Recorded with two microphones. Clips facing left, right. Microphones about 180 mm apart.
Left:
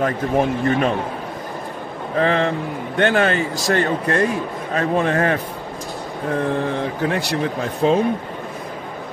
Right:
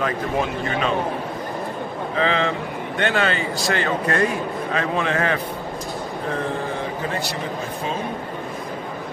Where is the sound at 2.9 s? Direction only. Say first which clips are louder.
Left 5 dB; 50° left (ahead or behind).